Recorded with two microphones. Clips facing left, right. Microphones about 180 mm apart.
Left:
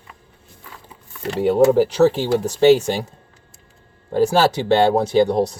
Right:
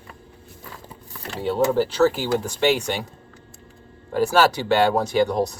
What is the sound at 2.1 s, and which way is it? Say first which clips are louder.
Speech: left 4 dB; 30° left (ahead or behind).